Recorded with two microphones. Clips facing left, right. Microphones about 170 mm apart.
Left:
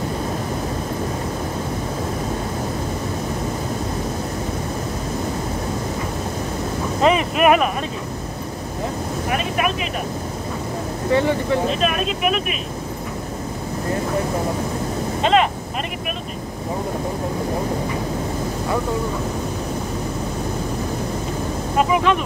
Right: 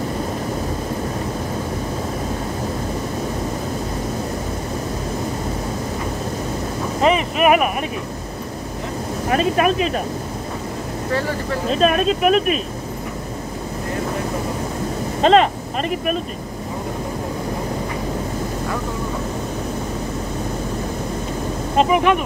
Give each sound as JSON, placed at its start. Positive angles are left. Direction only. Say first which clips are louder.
{"t": 7.0, "sound": "boat", "louder": "even", "side_deg": 0}
{"t": 9.3, "sound": "a sound", "louder": "right 6 dB", "side_deg": -35}
{"t": 11.1, "sound": "speech", "louder": "left 5 dB", "side_deg": 20}
{"t": 11.7, "sound": "speech", "louder": "right 5 dB", "side_deg": -40}
{"t": 15.2, "sound": "speech", "louder": "right 4 dB", "side_deg": -40}
{"t": 21.7, "sound": "speech", "louder": "right 2 dB", "side_deg": -20}